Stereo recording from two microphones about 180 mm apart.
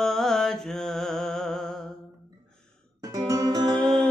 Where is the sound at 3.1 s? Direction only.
20° right (ahead or behind).